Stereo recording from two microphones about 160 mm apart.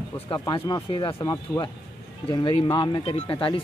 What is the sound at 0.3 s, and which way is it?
A man's voice, 25° left (ahead or behind).